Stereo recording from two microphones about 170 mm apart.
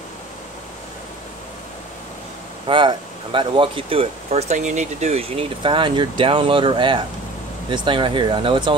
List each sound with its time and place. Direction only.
2.6 s speech: 30° right (ahead or behind)